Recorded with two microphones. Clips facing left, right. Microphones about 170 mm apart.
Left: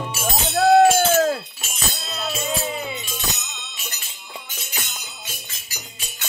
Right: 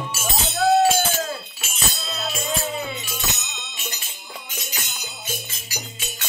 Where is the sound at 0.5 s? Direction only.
55° left (ahead or behind).